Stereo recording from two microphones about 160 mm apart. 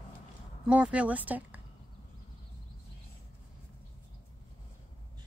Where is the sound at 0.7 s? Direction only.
5° right (ahead or behind).